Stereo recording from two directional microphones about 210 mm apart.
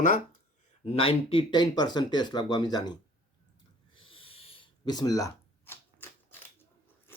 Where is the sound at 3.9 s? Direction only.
25° left (ahead or behind).